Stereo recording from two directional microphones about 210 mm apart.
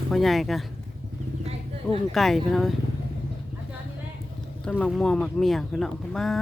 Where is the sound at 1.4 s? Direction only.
30° right (ahead or behind).